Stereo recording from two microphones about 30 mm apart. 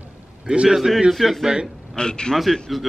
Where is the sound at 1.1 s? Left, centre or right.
Centre.